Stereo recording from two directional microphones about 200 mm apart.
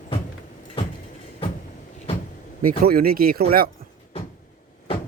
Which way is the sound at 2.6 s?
45° right (ahead or behind).